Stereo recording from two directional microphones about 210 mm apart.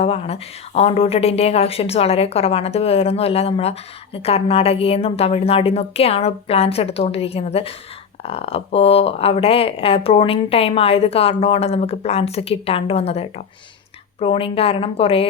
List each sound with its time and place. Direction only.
0.0 s speech: 30° left (ahead or behind)